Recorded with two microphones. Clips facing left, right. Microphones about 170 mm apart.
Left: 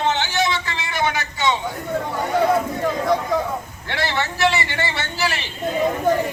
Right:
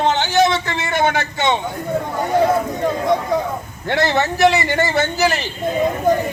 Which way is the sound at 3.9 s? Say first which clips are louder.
Right 7 dB; 45° right (ahead or behind).